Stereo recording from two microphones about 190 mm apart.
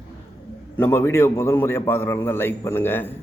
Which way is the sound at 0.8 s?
10° left (ahead or behind).